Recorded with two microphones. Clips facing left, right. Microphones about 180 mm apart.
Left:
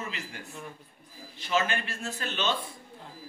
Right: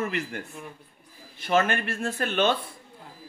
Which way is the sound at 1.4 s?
55° right (ahead or behind).